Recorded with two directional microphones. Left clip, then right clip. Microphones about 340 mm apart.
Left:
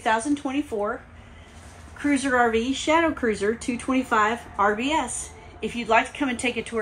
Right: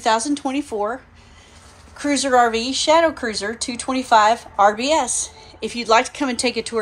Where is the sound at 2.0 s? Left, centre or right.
Centre.